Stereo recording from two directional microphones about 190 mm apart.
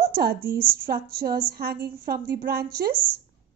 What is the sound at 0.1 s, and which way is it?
A woman's voice, 50° right (ahead or behind).